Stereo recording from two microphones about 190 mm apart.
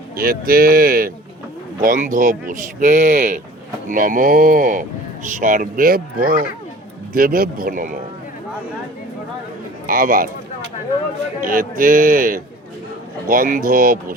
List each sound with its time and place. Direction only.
0.2 s a man's voice: 50° right (ahead or behind)
9.8 s speech: 45° right (ahead or behind)
11.4 s a man's voice: 45° right (ahead or behind)